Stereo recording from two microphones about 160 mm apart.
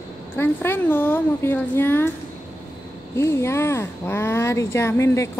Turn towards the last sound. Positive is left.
turn(degrees=15)  # may be behind; listen again after turning